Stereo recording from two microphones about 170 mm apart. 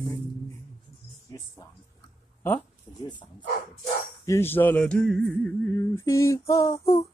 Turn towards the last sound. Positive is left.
turn(degrees=20)  # may be behind; listen again after turning